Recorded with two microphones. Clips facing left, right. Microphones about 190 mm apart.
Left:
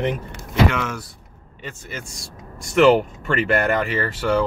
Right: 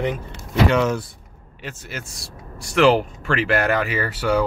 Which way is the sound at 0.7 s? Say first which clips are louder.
Right 5 dB; 30° right (ahead or behind).